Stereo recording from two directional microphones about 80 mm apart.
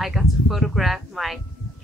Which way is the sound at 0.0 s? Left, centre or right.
Centre.